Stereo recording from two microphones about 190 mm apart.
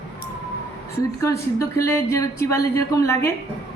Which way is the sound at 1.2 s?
15° left (ahead or behind).